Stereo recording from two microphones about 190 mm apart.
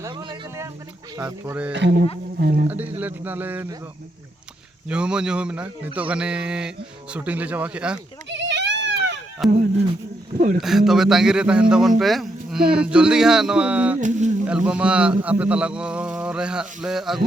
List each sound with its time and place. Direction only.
0.0 s a sound: 25° right (ahead or behind)
1.2 s speech: 5° right (ahead or behind)
1.7 s speech: 60° right (ahead or behind)
2.6 s speech: 10° right (ahead or behind)
4.9 s a man's voice: 5° right (ahead or behind)
8.3 s baby cry: 65° right (ahead or behind)
9.4 s a man's voice: centre (ahead or behind)
10.6 s a man's voice: centre (ahead or behind)
14.0 s speech: 40° right (ahead or behind)
14.4 s a man's voice: 5° right (ahead or behind)